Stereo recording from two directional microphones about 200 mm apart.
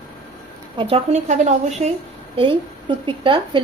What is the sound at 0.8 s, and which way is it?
A woman's voice, 30° right (ahead or behind).